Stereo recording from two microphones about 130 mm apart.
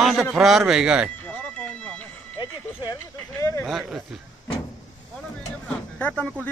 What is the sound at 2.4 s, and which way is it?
Speech, 30° left (ahead or behind).